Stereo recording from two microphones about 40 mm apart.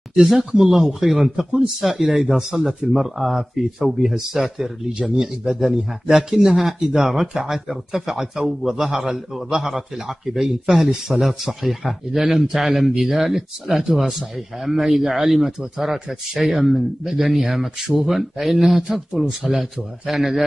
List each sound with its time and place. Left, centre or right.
0.1 s a man's voice: centre